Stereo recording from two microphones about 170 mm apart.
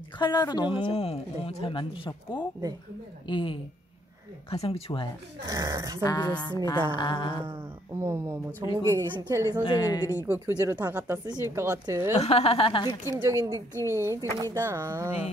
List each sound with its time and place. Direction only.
0.2 s a woman's voice: 25° left (ahead or behind)
5.5 s a woman's voice: 20° right (ahead or behind)
6.0 s speech: 25° left (ahead or behind)
8.0 s a woman's voice: 15° right (ahead or behind)
9.7 s speech: 20° left (ahead or behind)
10.2 s speech: 10° right (ahead or behind)
12.2 s a woman's voice: 35° left (ahead or behind)
13.0 s speech: 15° right (ahead or behind)